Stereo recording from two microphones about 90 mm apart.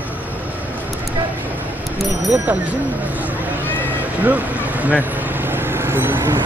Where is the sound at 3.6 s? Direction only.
20° left (ahead or behind).